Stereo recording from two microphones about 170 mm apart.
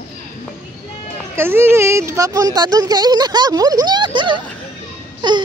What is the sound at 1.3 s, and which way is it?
Speech, 15° right (ahead or behind).